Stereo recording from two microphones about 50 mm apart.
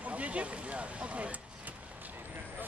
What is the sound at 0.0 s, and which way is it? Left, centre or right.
Speech, right.